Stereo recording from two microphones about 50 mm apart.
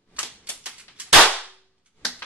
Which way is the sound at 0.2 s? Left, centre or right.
Right.